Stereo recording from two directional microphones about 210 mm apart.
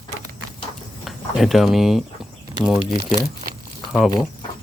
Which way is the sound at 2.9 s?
35° right (ahead or behind).